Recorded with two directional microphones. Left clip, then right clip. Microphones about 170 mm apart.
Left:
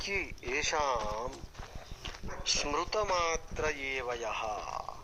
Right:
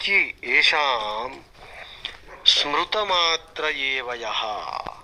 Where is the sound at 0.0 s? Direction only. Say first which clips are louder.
Right 15 dB; 30° right (ahead or behind).